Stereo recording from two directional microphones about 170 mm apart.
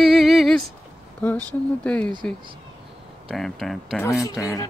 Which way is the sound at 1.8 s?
5° left (ahead or behind).